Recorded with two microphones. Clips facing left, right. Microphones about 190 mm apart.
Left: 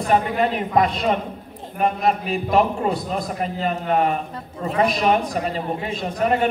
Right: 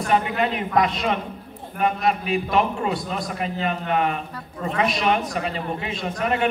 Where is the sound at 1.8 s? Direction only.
40° left (ahead or behind).